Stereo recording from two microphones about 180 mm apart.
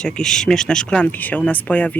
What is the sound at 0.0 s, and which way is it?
Speech, 5° left (ahead or behind).